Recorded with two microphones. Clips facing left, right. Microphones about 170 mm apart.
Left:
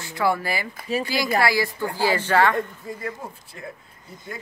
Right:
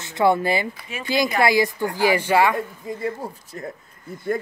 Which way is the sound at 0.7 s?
35° left (ahead or behind).